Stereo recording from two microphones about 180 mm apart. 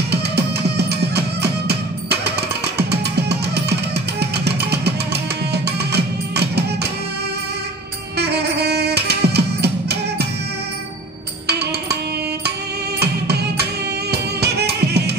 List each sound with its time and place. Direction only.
0.1 s music: 65° right (ahead or behind)
8.2 s music: 65° right (ahead or behind)
11.4 s music: 65° right (ahead or behind)
13.0 s music: 65° right (ahead or behind)